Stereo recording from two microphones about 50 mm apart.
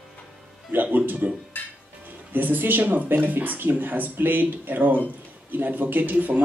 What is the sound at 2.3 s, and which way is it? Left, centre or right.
Speech, right.